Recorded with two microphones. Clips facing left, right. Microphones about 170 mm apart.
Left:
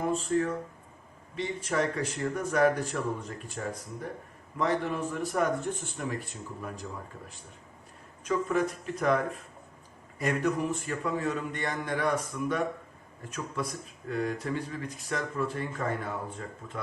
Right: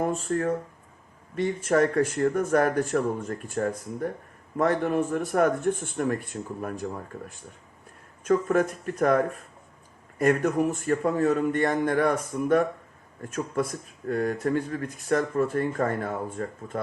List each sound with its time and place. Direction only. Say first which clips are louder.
0.0 s speech: right 2 dB; 50° right (ahead or behind)